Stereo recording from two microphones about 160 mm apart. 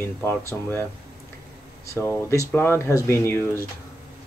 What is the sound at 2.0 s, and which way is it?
Speech, 20° left (ahead or behind).